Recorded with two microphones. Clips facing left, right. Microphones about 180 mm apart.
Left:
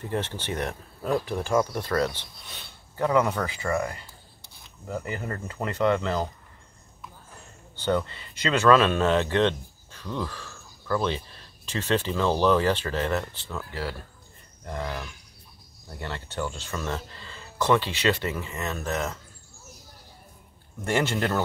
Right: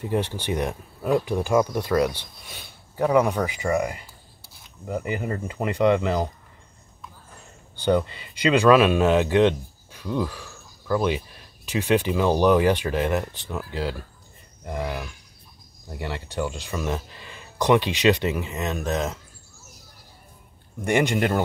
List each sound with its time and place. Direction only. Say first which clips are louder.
0.0 s speech: right 4 dB; 15° right (ahead or behind)
7.7 s speech: right 4 dB; 15° right (ahead or behind)
20.8 s speech: right 4 dB; 15° right (ahead or behind)